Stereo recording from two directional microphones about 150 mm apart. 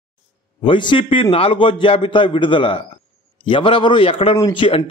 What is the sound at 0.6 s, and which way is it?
A man's voice, 35° left (ahead or behind).